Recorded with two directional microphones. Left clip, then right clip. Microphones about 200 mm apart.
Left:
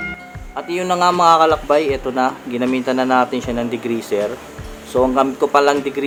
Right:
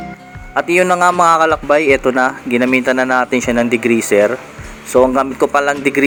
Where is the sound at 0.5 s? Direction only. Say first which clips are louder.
Right 7 dB; 25° right (ahead or behind).